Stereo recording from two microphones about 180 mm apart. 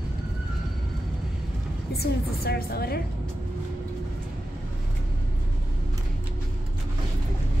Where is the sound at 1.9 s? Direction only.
60° left (ahead or behind).